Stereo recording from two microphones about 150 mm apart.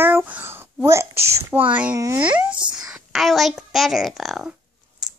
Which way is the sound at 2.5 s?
30° right (ahead or behind).